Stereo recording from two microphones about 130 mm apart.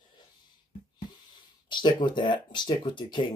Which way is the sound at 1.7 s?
35° left (ahead or behind).